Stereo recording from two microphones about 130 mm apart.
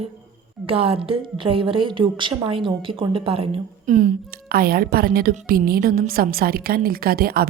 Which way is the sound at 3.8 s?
85° right.